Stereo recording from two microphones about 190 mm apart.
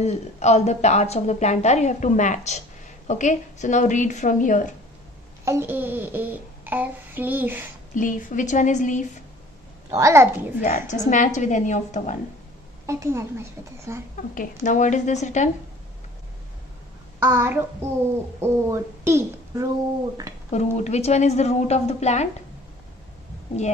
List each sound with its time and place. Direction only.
0.0 s a woman's voice: 35° left (ahead or behind)
5.4 s a child's voice: 15° right (ahead or behind)
7.9 s a woman's voice: 45° left (ahead or behind)
9.8 s a child's voice: 15° right (ahead or behind)
10.6 s a woman's voice: 40° left (ahead or behind)
12.8 s a child's voice: 15° right (ahead or behind)
14.3 s a woman's voice: 45° left (ahead or behind)
17.2 s a child's voice: 10° right (ahead or behind)
20.3 s a sound: 20° right (ahead or behind)
20.7 s a woman's voice: 35° left (ahead or behind)